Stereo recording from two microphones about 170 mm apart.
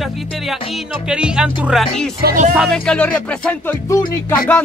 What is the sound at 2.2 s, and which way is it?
Speech, 50° right (ahead or behind).